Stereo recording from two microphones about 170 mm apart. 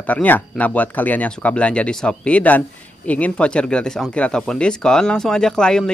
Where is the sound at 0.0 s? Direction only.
10° left (ahead or behind).